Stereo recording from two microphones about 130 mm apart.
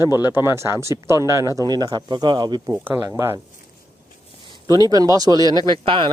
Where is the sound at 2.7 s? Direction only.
15° right (ahead or behind).